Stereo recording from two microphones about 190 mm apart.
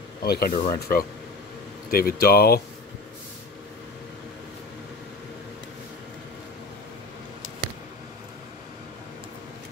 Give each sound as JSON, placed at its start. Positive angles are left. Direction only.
{"t": 0.2, "sound": "speech", "side_deg": 55}